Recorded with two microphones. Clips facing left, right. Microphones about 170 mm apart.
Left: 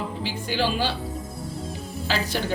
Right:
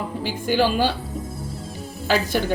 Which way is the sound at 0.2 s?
50° right (ahead or behind).